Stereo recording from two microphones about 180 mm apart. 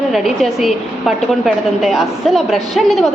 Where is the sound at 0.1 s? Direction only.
Centre (ahead or behind).